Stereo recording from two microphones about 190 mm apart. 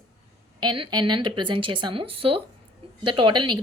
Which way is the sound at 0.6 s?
25° right (ahead or behind).